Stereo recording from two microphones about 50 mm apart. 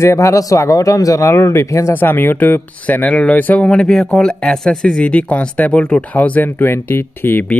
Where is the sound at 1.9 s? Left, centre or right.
Left.